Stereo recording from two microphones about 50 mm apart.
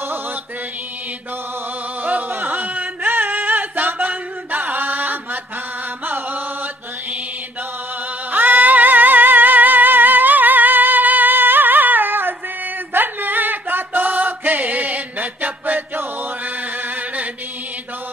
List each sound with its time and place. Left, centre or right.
2.0 s a sound: right
6.0 s music: right
8.3 s music: right
16.2 s chant: right